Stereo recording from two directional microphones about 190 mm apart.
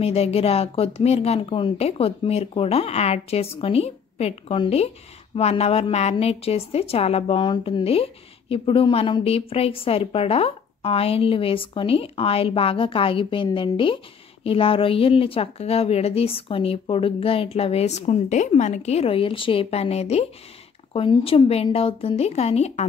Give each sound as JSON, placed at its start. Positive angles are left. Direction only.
{"t": 0.0, "sound": "speech", "side_deg": 30}